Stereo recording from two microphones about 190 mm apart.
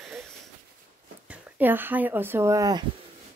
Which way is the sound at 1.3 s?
10° right (ahead or behind).